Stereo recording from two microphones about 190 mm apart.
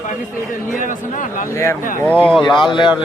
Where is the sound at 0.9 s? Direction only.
45° left (ahead or behind).